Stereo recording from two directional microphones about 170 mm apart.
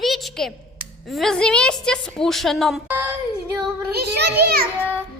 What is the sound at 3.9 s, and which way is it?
Speech, 70° right (ahead or behind).